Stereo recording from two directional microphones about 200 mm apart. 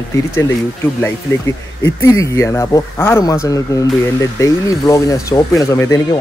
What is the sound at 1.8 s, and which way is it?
Speech, 15° left (ahead or behind).